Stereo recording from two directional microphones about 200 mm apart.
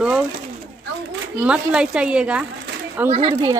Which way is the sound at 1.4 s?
5° right (ahead or behind).